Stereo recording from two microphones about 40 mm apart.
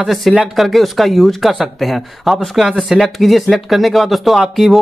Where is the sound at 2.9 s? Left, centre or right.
Centre.